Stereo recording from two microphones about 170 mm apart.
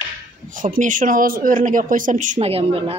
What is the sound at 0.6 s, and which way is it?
Speech, 50° right (ahead or behind).